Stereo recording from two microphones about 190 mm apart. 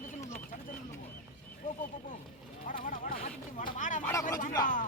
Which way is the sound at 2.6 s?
45° left (ahead or behind).